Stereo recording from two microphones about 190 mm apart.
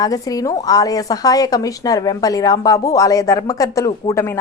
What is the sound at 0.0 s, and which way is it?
A woman's voice, 20° left (ahead or behind).